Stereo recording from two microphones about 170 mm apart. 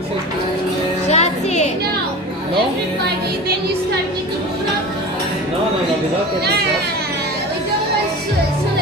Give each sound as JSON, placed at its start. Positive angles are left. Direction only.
{"t": 1.0, "sound": "music", "side_deg": 40}